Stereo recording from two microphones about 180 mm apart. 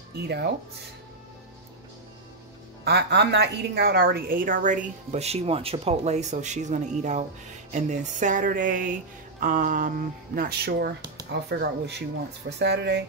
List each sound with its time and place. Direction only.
0.3 s speech: 65° right (ahead or behind)
2.8 s a woman's voice: 65° right (ahead or behind)